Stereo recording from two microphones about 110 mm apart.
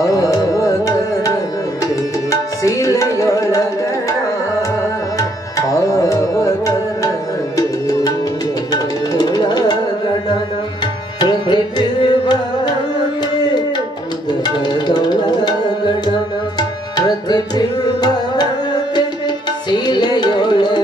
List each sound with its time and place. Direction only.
0.0 s music: 30° left (ahead or behind)
2.6 s tabla: 30° left (ahead or behind)
5.7 s tabla: 30° left (ahead or behind)
8.7 s tabla: 35° left (ahead or behind)
11.1 s tabla: 40° left (ahead or behind)
14.4 s tabla: 40° left (ahead or behind)
19.7 s music: 40° left (ahead or behind)